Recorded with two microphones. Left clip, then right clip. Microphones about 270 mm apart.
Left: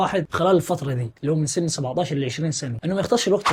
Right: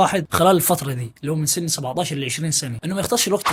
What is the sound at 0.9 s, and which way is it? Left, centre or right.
Speech, right.